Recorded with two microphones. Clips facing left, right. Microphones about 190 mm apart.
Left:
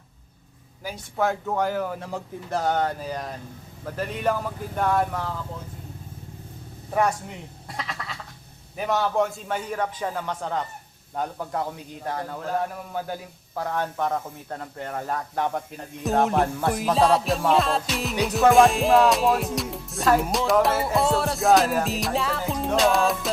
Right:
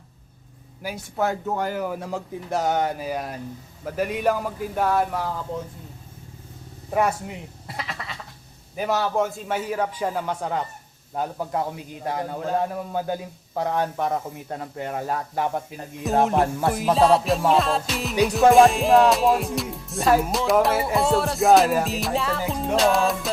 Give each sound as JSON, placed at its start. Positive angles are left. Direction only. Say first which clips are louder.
{"t": 0.8, "sound": "speech", "louder": "even", "side_deg": -10}
{"t": 7.7, "sound": "sheep", "louder": "even", "side_deg": -5}
{"t": 8.7, "sound": "music", "louder": "right 1 dB", "side_deg": -5}
{"t": 11.2, "sound": "a man's voice", "louder": "right 2 dB", "side_deg": -15}
{"t": 16.6, "sound": "music", "louder": "right 3 dB", "side_deg": 0}